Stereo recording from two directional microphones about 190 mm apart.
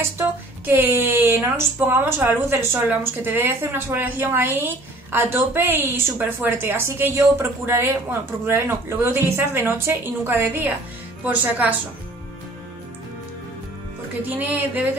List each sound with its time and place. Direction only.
0.2 s speech: 10° right (ahead or behind)
14.3 s speech: 10° right (ahead or behind)